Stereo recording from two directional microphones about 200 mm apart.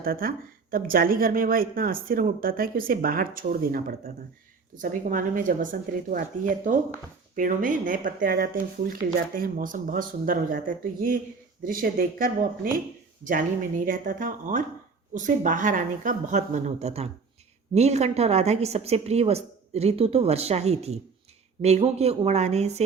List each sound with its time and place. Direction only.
0.0 s a woman's voice: 45° right (ahead or behind)